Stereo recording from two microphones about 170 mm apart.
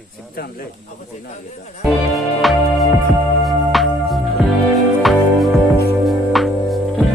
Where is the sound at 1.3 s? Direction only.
45° left (ahead or behind).